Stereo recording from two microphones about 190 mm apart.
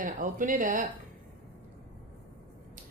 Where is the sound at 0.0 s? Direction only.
45° right (ahead or behind).